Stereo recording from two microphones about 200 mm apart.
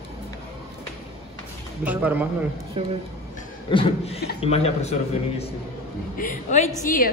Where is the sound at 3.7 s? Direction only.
25° left (ahead or behind); by 7.1 s 45° left (ahead or behind).